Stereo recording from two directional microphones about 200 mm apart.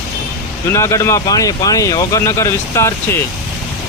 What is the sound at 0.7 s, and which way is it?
Speech, 15° left (ahead or behind).